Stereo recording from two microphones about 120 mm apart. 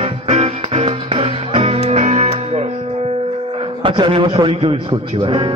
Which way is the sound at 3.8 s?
45° right (ahead or behind).